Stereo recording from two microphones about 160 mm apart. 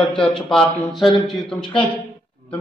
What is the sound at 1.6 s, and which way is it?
Speech, 30° left (ahead or behind).